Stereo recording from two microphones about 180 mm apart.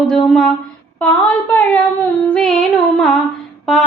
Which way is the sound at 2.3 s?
Centre (ahead or behind).